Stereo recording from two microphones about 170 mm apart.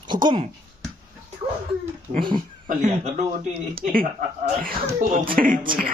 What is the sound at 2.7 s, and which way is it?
Speech, 45° right (ahead or behind).